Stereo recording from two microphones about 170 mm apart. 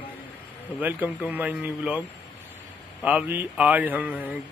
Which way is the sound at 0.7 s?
10° right (ahead or behind).